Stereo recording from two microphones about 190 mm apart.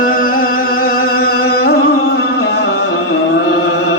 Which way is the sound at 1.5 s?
55° left (ahead or behind).